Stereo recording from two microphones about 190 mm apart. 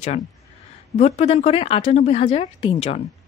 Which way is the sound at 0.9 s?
35° left (ahead or behind).